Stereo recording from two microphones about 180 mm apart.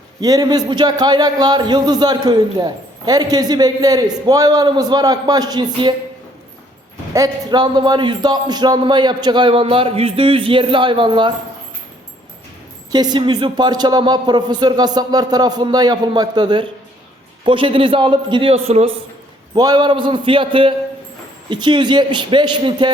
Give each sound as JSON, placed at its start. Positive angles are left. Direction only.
{"t": 0.2, "sound": "a man's voice", "side_deg": -20}
{"t": 7.1, "sound": "a man's voice", "side_deg": -20}
{"t": 12.9, "sound": "a man's voice", "side_deg": -25}
{"t": 19.5, "sound": "a man's voice", "side_deg": -25}